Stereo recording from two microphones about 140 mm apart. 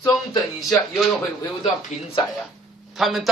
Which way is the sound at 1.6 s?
45° left (ahead or behind).